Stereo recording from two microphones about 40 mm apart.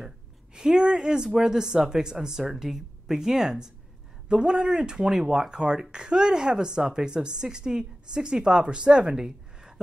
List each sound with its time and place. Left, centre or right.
0.6 s speech: centre